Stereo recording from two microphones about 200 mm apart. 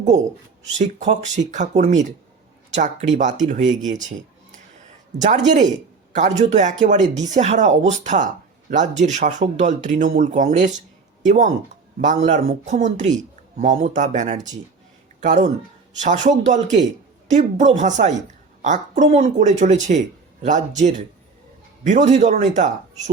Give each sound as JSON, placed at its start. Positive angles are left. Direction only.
{"t": 0.8, "sound": "speech", "side_deg": -35}
{"t": 5.1, "sound": "speech", "side_deg": -60}
{"t": 5.5, "sound": "a woman's voice", "side_deg": -35}